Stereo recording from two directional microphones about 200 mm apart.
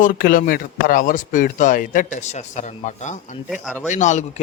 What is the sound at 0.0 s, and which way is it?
Speech, 45° left (ahead or behind).